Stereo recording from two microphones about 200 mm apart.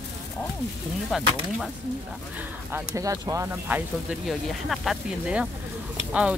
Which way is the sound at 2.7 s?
15° right (ahead or behind).